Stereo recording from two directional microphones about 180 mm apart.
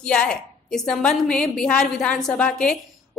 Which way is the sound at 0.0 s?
5° left (ahead or behind).